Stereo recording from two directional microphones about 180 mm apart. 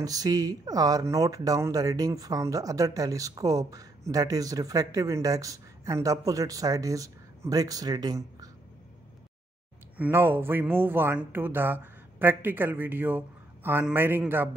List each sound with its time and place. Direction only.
0.0 s speech: 20° right (ahead or behind)
9.9 s speech: 10° right (ahead or behind)